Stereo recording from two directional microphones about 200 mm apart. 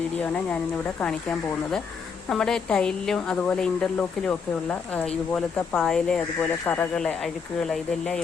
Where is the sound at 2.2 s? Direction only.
5° left (ahead or behind).